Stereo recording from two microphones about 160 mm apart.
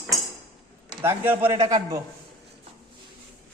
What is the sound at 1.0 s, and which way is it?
A man's voice, 15° right (ahead or behind).